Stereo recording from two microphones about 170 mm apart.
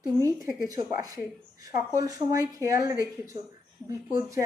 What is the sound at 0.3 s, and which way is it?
Speech, 20° right (ahead or behind).